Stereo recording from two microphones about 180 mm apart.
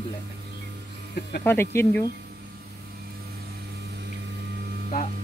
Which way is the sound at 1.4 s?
15° left (ahead or behind).